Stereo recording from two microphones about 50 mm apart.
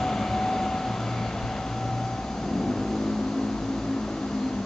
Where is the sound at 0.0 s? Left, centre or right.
Centre.